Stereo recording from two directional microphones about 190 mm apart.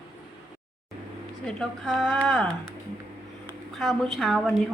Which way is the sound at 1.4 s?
5° left (ahead or behind).